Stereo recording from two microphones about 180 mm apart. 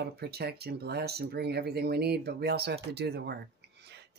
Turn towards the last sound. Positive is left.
turn(degrees=-65)  # may be behind; listen again after turning